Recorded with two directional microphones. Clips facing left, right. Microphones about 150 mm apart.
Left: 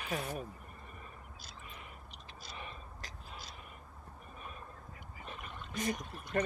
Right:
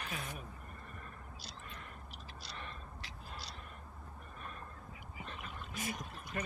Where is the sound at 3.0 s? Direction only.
50° left (ahead or behind).